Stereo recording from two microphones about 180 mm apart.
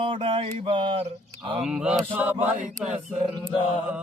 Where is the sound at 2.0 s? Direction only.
10° right (ahead or behind).